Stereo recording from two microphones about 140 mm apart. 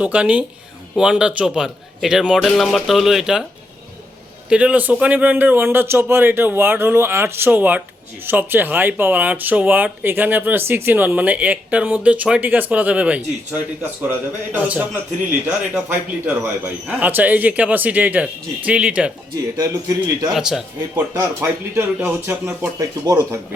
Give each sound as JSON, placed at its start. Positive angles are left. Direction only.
{"t": 0.0, "sound": "a man's voice", "side_deg": -10}
{"t": 4.4, "sound": "a man's voice", "side_deg": -10}
{"t": 19.5, "sound": "a man's voice", "side_deg": -25}
{"t": 20.3, "sound": "a man's voice", "side_deg": -5}